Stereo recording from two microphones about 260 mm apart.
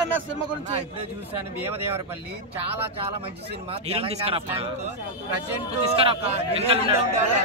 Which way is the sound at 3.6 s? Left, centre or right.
Right.